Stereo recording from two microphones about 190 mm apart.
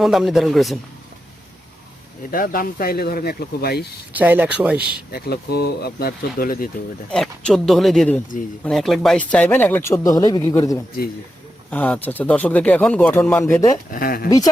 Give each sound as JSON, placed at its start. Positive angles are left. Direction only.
{"t": 0.0, "sound": "speech", "side_deg": 0}
{"t": 2.3, "sound": "speech", "side_deg": 45}
{"t": 4.1, "sound": "speech", "side_deg": -10}
{"t": 5.1, "sound": "speech", "side_deg": 55}
{"t": 7.1, "sound": "speech", "side_deg": 5}
{"t": 13.9, "sound": "speech", "side_deg": 50}
{"t": 14.3, "sound": "speech", "side_deg": 20}